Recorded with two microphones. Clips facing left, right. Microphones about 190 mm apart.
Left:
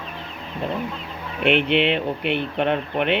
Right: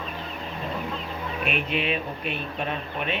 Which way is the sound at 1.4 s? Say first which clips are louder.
Left 10 dB; 70° left (ahead or behind).